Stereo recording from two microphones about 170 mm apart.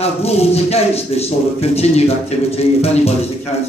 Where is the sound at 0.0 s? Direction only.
35° left (ahead or behind).